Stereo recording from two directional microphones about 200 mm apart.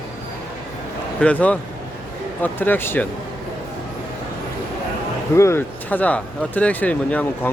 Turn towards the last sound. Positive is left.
turn(degrees=5)  # may be behind; listen again after turning